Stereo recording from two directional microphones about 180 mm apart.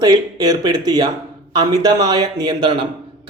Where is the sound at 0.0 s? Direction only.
20° right (ahead or behind).